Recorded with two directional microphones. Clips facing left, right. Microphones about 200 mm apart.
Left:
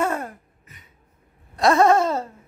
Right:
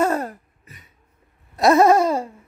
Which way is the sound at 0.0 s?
40° right (ahead or behind).